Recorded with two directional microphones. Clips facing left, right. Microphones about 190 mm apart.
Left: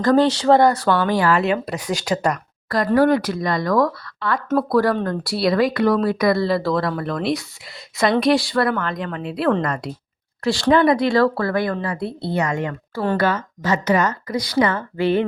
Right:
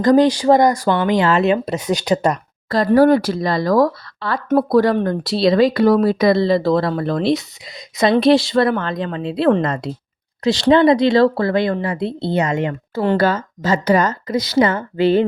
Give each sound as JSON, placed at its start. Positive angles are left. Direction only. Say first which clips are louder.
{"t": 0.0, "sound": "speech", "louder": "right 3 dB", "side_deg": -15}
{"t": 4.4, "sound": "speech", "louder": "right 4 dB", "side_deg": -20}
{"t": 13.1, "sound": "speech", "louder": "right 3 dB", "side_deg": -30}